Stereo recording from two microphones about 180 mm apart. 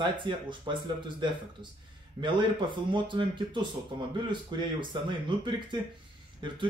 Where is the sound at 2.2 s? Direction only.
25° right (ahead or behind).